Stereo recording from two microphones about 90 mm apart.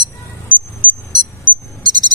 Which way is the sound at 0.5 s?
60° right (ahead or behind).